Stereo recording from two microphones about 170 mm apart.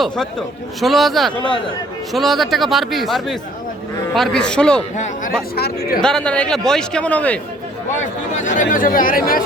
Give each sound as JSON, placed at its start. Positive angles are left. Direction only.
{"t": 0.0, "sound": "a man's voice", "side_deg": 0}
{"t": 5.5, "sound": "speech", "side_deg": 65}
{"t": 6.0, "sound": "a man's voice", "side_deg": 5}
{"t": 8.4, "sound": "speech", "side_deg": 45}